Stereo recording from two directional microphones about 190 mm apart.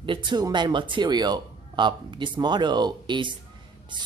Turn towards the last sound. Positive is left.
turn(degrees=-25)  # may be behind; listen again after turning